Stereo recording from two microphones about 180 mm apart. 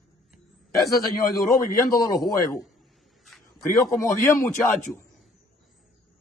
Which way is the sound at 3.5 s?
15° left (ahead or behind).